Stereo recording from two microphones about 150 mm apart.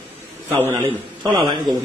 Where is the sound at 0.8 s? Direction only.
30° right (ahead or behind).